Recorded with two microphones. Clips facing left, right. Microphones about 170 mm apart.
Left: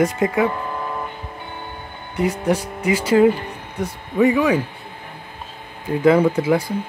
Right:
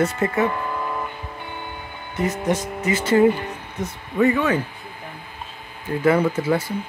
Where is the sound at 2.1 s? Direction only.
10° left (ahead or behind).